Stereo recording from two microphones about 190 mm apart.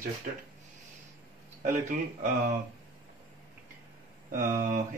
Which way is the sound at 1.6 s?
45° right (ahead or behind).